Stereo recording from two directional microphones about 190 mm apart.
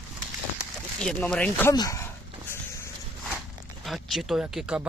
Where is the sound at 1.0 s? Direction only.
5° left (ahead or behind).